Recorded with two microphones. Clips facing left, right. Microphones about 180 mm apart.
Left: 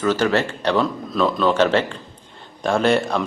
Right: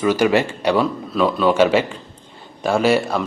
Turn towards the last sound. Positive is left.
turn(degrees=-5)  # may be behind; listen again after turning